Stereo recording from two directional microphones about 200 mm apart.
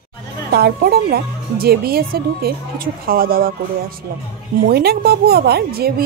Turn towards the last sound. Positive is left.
turn(degrees=-50)  # may be behind; listen again after turning